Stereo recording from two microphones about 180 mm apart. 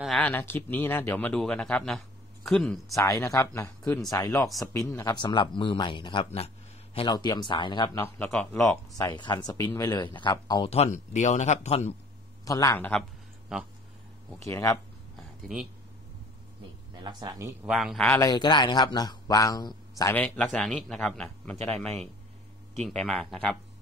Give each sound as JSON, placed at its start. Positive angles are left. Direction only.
{"t": 0.0, "sound": "speech", "side_deg": 0}
{"t": 0.3, "sound": "speech", "side_deg": 10}
{"t": 2.9, "sound": "speech", "side_deg": 20}
{"t": 8.0, "sound": "speech", "side_deg": 10}
{"t": 8.9, "sound": "speech", "side_deg": 20}
{"t": 10.7, "sound": "speech", "side_deg": 40}
{"t": 12.4, "sound": "speech", "side_deg": 20}
{"t": 13.5, "sound": "speech", "side_deg": -5}
{"t": 14.4, "sound": "speech", "side_deg": 20}
{"t": 17.0, "sound": "speech", "side_deg": -25}
{"t": 17.6, "sound": "speech", "side_deg": 0}
{"t": 18.1, "sound": "speech", "side_deg": 20}
{"t": 20.2, "sound": "speech", "side_deg": 5}